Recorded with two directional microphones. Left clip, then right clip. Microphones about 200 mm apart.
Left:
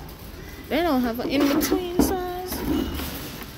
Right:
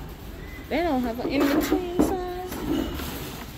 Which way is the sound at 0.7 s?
25° left (ahead or behind).